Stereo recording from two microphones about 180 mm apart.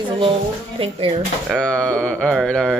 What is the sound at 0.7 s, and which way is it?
Speech, 30° right (ahead or behind).